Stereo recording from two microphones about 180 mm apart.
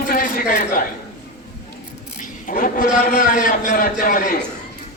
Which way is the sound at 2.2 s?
45° left (ahead or behind).